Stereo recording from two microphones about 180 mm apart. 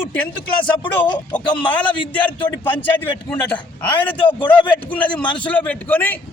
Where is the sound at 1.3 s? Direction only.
10° left (ahead or behind).